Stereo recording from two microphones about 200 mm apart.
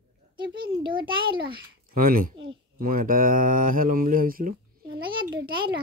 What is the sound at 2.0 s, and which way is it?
Speech, 45° right (ahead or behind).